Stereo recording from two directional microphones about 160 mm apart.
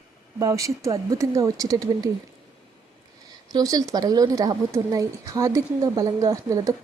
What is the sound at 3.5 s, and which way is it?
Speech, 25° right (ahead or behind).